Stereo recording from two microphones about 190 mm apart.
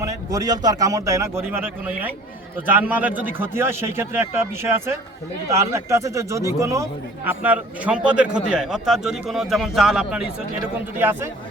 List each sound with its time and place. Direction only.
0.0 s a man's voice: 15° right (ahead or behind)